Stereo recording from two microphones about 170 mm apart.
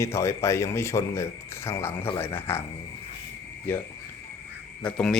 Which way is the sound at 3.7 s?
10° left (ahead or behind).